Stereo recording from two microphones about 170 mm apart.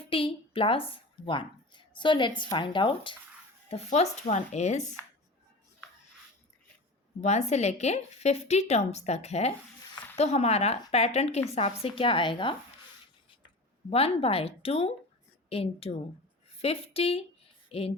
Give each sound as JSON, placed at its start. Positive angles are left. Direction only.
{"t": 0.0, "sound": "a woman's voice", "side_deg": 30}
{"t": 7.2, "sound": "a woman's voice", "side_deg": 40}
{"t": 13.9, "sound": "a woman's voice", "side_deg": 35}